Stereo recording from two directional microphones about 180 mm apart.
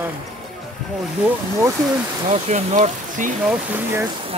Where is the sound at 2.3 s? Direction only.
40° right (ahead or behind).